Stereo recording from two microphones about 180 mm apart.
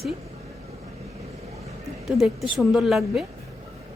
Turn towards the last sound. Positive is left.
turn(degrees=0)  # may be behind; listen again after turning